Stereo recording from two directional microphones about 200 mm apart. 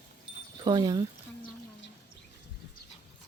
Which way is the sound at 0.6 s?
20° right (ahead or behind).